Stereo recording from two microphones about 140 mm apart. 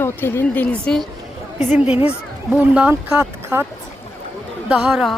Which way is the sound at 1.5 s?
50° left (ahead or behind).